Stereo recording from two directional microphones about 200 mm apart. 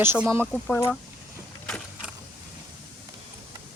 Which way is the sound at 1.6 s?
5° left (ahead or behind).